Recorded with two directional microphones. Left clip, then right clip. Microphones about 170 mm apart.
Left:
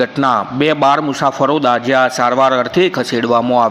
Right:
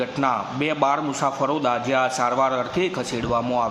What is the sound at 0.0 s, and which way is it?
A man's voice, 45° left (ahead or behind).